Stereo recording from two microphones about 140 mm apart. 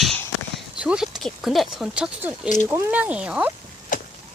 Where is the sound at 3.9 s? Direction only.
70° left (ahead or behind).